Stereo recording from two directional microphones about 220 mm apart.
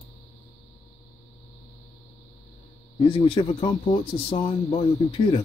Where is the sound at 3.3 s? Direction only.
25° left (ahead or behind).